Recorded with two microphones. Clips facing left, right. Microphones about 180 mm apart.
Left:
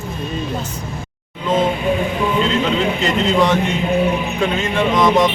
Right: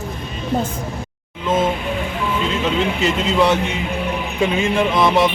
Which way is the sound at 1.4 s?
5° right (ahead or behind).